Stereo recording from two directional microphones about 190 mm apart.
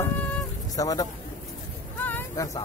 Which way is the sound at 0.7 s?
20° left (ahead or behind).